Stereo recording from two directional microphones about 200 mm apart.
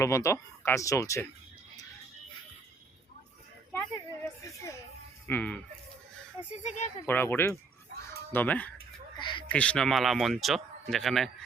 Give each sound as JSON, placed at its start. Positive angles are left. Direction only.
{"t": 0.0, "sound": "speech", "side_deg": 15}
{"t": 4.4, "sound": "a child's voice", "side_deg": 15}
{"t": 6.4, "sound": "speech", "side_deg": 35}
{"t": 7.1, "sound": "speech", "side_deg": 10}
{"t": 9.1, "sound": "a sound", "side_deg": 25}
{"t": 9.5, "sound": "speech", "side_deg": 5}